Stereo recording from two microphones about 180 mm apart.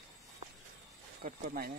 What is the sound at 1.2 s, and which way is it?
Speech, 60° right (ahead or behind).